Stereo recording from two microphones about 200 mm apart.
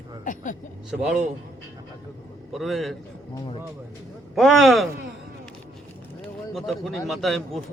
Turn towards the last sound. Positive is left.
turn(degrees=0)  # may be behind; listen again after turning